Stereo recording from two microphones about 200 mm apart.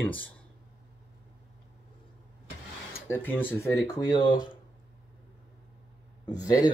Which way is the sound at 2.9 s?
10° left (ahead or behind).